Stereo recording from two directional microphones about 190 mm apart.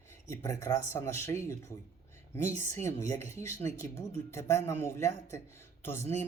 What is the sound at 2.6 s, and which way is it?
Speech, 15° left (ahead or behind).